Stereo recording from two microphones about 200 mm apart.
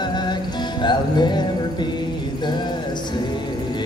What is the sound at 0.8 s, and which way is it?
Music, 20° left (ahead or behind).